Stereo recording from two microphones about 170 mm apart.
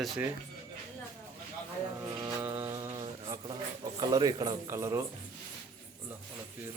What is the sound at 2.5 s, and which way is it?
Mantra, 15° right (ahead or behind).